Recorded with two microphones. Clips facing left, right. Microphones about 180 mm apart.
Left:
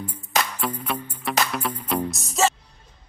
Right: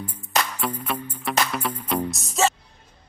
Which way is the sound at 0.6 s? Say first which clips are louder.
Even; centre (ahead or behind).